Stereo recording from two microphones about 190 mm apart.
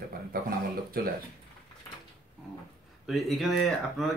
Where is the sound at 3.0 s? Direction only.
Centre (ahead or behind).